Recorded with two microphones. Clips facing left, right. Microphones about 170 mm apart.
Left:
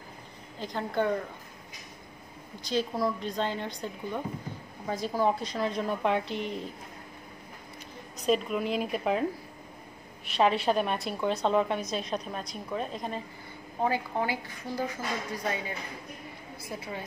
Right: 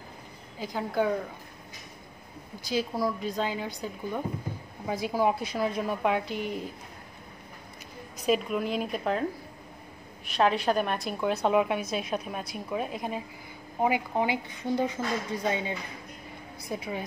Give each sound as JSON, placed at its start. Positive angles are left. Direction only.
{"t": 0.6, "sound": "a woman's voice", "side_deg": -5}
{"t": 2.6, "sound": "a woman's voice", "side_deg": -5}
{"t": 8.3, "sound": "a woman's voice", "side_deg": 0}
{"t": 10.3, "sound": "a woman's voice", "side_deg": 0}